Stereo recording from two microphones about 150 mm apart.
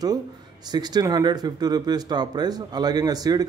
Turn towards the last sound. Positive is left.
turn(degrees=-25)  # may be behind; listen again after turning